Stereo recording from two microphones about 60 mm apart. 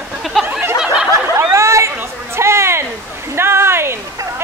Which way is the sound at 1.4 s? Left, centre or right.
Right.